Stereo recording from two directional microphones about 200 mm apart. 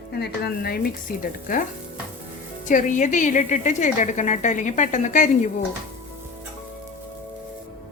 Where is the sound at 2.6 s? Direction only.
40° left (ahead or behind).